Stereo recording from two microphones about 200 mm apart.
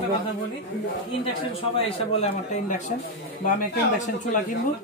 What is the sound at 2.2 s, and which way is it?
Speech, 40° left (ahead or behind).